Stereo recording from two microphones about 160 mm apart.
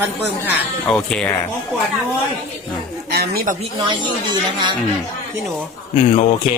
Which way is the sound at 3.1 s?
75° right (ahead or behind).